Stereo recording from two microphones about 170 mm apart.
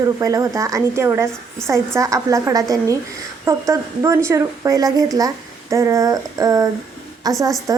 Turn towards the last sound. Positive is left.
turn(degrees=-20)  # may be behind; listen again after turning